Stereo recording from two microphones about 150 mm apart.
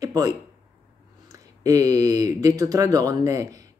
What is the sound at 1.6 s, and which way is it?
Speech, 20° right (ahead or behind).